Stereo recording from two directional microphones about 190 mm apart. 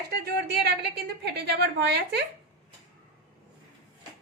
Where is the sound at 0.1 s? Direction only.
60° right (ahead or behind).